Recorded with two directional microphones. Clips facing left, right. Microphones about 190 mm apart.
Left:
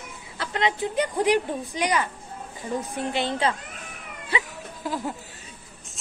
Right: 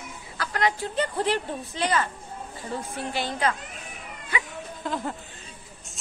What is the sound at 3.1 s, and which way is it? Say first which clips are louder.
A woman's voice: left 1 dB; 25° left (ahead or behind).